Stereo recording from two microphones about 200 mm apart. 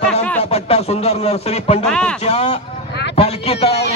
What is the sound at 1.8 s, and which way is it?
Speech, 5° left (ahead or behind).